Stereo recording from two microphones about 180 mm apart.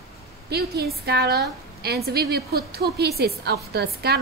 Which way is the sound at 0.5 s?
65° right (ahead or behind).